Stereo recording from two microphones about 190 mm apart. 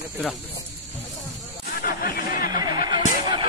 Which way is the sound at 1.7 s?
50° left (ahead or behind).